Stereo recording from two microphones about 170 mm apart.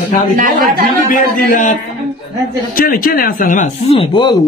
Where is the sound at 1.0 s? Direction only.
55° left (ahead or behind).